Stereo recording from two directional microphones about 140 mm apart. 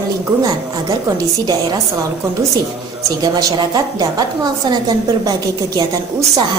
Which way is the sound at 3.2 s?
30° right (ahead or behind).